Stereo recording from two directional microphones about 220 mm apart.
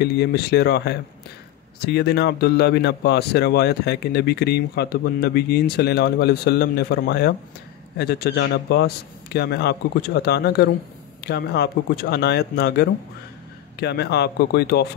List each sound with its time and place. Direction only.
0.0 s speech: 50° left (ahead or behind)